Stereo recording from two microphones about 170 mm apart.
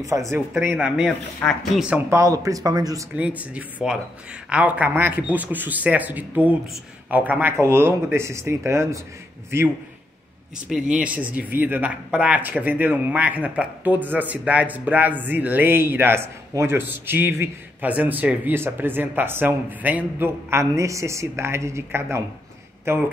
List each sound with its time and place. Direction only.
0.0 s speech: 20° right (ahead or behind)
3.2 s speech: 10° right (ahead or behind)
10.7 s speech: 5° right (ahead or behind)